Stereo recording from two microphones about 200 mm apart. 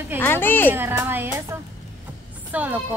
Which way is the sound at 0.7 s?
10° right (ahead or behind).